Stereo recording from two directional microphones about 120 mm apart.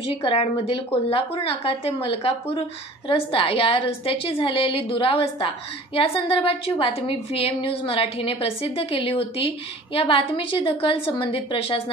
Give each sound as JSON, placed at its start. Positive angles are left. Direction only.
{"t": 0.2, "sound": "a woman's voice", "side_deg": 55}